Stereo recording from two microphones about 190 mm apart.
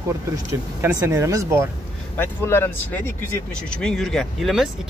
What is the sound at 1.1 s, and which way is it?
Speech, 15° right (ahead or behind).